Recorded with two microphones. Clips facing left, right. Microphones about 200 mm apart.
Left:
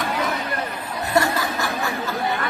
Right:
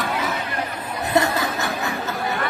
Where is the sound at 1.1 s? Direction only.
20° right (ahead or behind).